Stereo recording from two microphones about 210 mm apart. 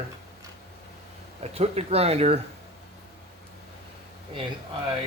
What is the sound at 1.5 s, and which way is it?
Speech, 30° right (ahead or behind).